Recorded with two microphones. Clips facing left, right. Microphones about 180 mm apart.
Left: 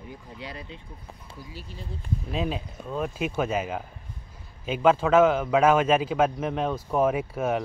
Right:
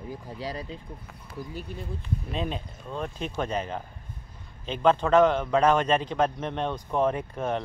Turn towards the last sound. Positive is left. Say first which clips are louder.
# left 3 dB
turn(degrees=5)  # may be behind; listen again after turning